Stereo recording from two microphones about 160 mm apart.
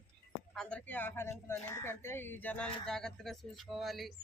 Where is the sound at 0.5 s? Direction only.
5° left (ahead or behind).